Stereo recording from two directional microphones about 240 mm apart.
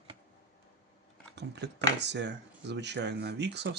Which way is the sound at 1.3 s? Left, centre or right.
Right.